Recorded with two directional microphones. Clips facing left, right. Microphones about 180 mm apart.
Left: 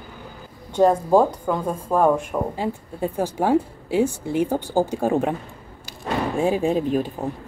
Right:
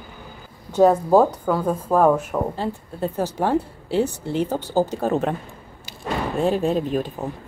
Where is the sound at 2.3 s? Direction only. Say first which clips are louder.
Even; 10° left (ahead or behind).